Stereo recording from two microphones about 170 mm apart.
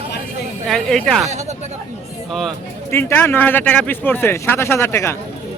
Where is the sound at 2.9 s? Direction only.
15° left (ahead or behind).